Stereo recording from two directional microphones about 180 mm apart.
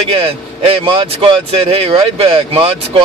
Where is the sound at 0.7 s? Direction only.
30° right (ahead or behind).